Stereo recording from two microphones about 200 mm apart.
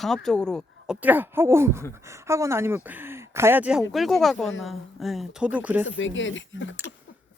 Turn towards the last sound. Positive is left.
turn(degrees=70)  # may be behind; listen again after turning